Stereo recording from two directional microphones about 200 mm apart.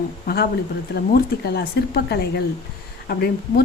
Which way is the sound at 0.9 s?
50° left (ahead or behind).